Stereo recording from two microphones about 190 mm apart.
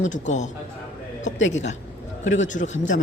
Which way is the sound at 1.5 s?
35° left (ahead or behind).